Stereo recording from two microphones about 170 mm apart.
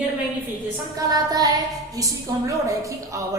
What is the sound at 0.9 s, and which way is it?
Speech, 20° right (ahead or behind).